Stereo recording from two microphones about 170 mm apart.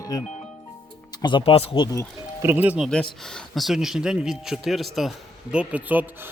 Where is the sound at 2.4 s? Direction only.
10° right (ahead or behind).